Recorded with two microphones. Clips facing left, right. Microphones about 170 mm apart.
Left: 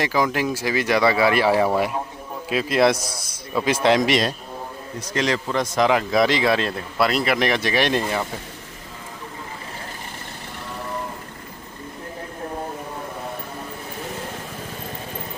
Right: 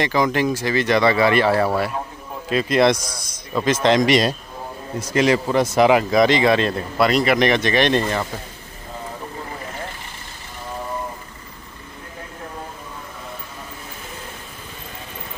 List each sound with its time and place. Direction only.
0.0 s speech: 5° left (ahead or behind)
5.1 s speech: 10° right (ahead or behind); by 8.3 s 10° left (ahead or behind)